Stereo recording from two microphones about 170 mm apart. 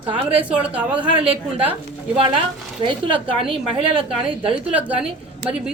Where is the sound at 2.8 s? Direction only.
30° right (ahead or behind).